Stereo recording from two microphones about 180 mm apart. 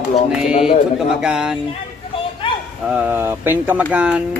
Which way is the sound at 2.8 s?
5° right (ahead or behind).